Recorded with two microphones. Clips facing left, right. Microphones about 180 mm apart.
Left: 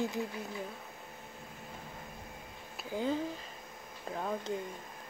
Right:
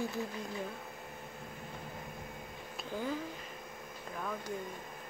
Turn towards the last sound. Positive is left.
turn(degrees=30)  # may be behind; listen again after turning